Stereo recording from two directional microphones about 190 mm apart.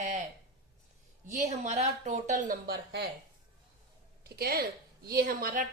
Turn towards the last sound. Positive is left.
turn(degrees=-50)  # may be behind; listen again after turning